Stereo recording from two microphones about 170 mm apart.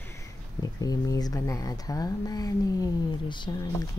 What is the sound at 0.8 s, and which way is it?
Speech, 20° left (ahead or behind).